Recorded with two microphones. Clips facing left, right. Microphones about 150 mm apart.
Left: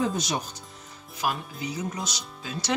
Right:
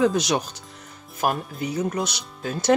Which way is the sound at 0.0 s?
85° right.